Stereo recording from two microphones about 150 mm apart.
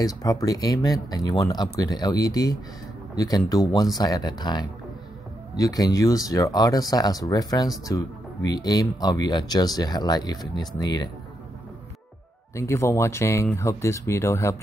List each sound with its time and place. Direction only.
0.0 s speech: 25° left (ahead or behind)
12.5 s speech: 20° left (ahead or behind)